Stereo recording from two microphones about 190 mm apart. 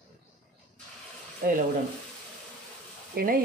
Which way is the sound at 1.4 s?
50° right (ahead or behind).